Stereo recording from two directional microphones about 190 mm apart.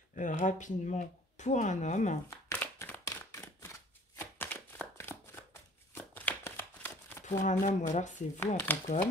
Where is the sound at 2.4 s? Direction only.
10° left (ahead or behind).